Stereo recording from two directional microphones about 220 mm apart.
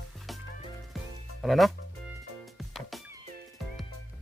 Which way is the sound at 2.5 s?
Centre (ahead or behind).